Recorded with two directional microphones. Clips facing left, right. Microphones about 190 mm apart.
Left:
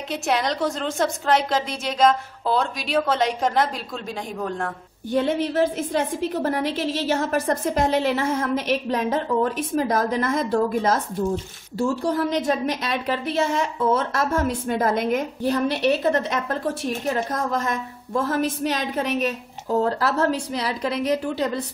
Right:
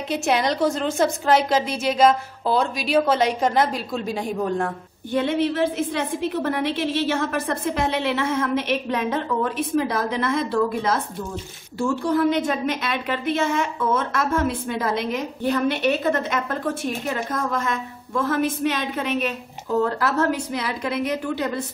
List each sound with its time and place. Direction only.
0.1 s a woman's voice: centre (ahead or behind)
5.1 s a woman's voice: 40° left (ahead or behind)
15.4 s a woman's voice: 35° left (ahead or behind)